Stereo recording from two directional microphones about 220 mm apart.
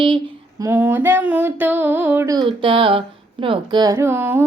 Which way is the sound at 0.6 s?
10° right (ahead or behind).